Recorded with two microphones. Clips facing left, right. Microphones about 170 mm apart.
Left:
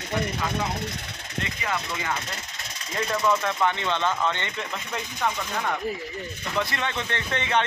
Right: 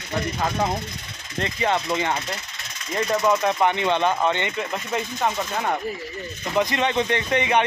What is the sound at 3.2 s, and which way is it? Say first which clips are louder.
Speech: right 3 dB; 20° right (ahead or behind).